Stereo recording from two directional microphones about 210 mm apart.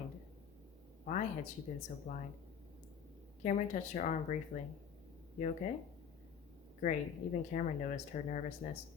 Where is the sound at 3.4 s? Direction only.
35° left (ahead or behind).